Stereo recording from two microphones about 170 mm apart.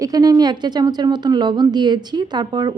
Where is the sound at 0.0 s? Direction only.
20° right (ahead or behind).